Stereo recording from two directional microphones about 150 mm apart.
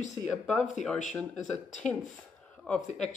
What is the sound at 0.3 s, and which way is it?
Speech, centre (ahead or behind).